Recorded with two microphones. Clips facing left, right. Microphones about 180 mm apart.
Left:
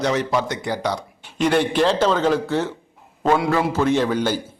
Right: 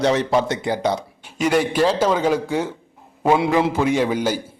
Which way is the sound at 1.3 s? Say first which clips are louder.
Even; 5° right (ahead or behind).